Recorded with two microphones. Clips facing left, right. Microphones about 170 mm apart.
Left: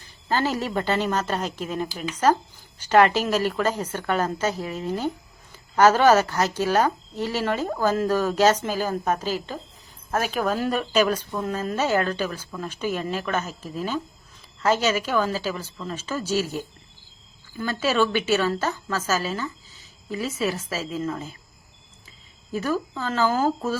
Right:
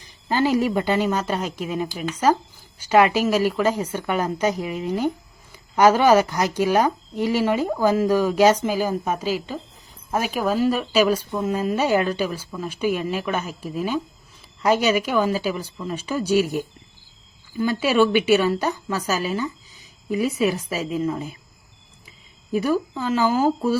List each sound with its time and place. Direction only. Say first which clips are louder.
0.0 s a woman's voice: right 3 dB; 15° right (ahead or behind)
22.5 s a woman's voice: right 4 dB; 15° right (ahead or behind)